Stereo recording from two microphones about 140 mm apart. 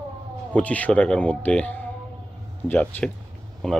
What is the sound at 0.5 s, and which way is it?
Speech, 10° left (ahead or behind).